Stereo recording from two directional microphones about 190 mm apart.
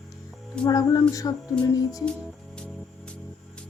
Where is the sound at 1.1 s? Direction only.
15° left (ahead or behind).